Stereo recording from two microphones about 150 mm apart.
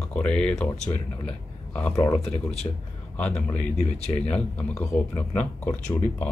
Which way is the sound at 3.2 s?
10° left (ahead or behind).